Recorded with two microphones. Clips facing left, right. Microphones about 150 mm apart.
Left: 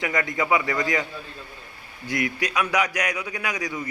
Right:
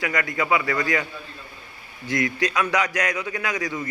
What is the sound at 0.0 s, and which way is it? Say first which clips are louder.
A man's voice: even; 20° left (ahead or behind).